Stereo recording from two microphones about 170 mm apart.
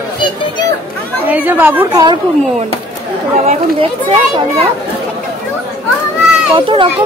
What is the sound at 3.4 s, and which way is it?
A child's voice, 35° right (ahead or behind).